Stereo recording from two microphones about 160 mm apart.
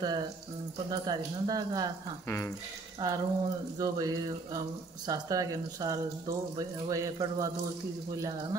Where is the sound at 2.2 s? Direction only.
15° left (ahead or behind).